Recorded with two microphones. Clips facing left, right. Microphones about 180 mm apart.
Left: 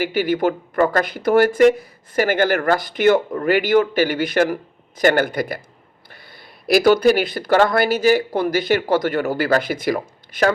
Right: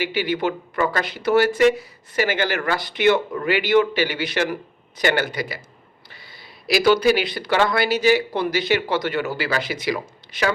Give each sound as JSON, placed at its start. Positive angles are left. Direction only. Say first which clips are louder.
{"t": 0.0, "sound": "speech", "louder": "left 4 dB", "side_deg": 50}